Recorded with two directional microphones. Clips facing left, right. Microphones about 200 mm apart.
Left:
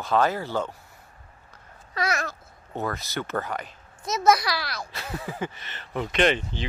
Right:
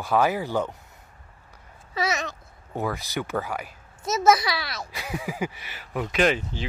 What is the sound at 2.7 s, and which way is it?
Speech, 10° right (ahead or behind).